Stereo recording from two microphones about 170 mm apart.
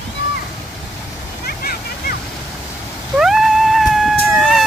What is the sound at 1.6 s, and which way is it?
Vehicle, 60° left (ahead or behind).